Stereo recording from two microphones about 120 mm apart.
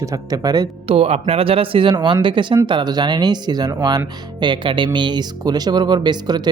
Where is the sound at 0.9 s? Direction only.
55° right (ahead or behind).